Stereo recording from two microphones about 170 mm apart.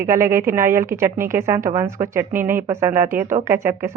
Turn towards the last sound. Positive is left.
turn(degrees=-15)  # may be behind; listen again after turning